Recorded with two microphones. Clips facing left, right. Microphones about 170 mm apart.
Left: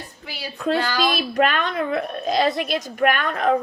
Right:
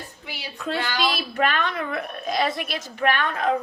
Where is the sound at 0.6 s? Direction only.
40° left (ahead or behind).